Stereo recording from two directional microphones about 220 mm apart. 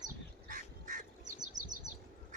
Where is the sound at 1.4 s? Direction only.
35° right (ahead or behind).